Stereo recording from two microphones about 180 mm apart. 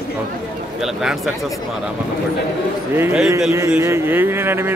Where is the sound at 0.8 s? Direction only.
5° right (ahead or behind).